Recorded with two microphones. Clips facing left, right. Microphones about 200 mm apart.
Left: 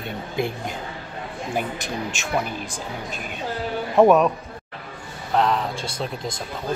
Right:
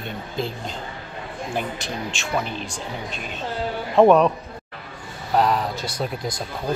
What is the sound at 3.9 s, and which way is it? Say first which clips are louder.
Speech: right 1 dB; 5° left (ahead or behind).